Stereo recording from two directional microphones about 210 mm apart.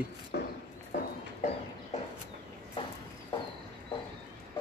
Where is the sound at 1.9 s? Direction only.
30° left (ahead or behind).